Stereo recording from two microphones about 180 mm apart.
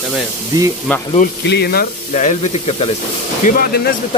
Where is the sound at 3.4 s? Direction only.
55° left (ahead or behind).